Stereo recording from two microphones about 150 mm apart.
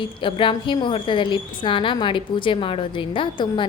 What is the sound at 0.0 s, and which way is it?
A woman's voice, 35° left (ahead or behind).